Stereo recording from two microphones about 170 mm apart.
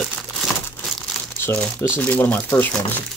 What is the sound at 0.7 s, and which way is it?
Speech, 10° left (ahead or behind).